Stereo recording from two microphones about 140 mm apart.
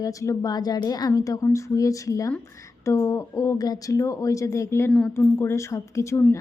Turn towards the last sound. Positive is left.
turn(degrees=20)  # may be behind; listen again after turning